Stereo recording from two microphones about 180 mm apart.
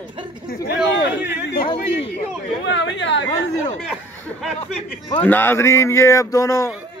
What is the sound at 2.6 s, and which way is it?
Speech, 90° left.